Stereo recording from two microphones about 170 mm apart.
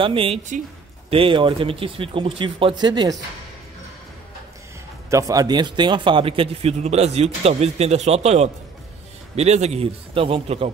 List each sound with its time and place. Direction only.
0.0 s a man's voice: 30° right (ahead or behind)
1.1 s a man's voice: 30° right (ahead or behind)
5.1 s a man's voice: 20° right (ahead or behind)